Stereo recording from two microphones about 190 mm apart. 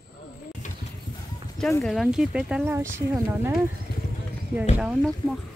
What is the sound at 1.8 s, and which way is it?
Speech, centre (ahead or behind).